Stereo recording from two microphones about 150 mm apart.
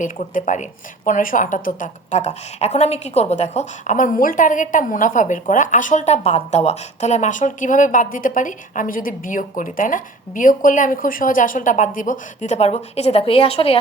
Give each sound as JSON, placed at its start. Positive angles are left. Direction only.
{"t": 0.0, "sound": "a woman's voice", "side_deg": 60}